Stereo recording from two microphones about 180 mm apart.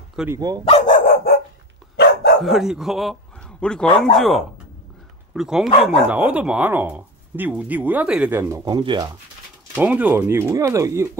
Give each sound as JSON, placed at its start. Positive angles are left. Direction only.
{"t": 0.3, "sound": "speech", "side_deg": -20}
{"t": 0.7, "sound": "dog", "side_deg": 40}
{"t": 2.4, "sound": "a man's voice", "side_deg": 0}
{"t": 9.8, "sound": "speech", "side_deg": -10}